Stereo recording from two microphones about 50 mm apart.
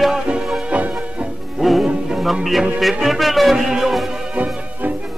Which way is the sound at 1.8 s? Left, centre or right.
Centre.